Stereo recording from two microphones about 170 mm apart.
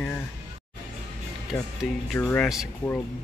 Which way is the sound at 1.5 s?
5° left (ahead or behind).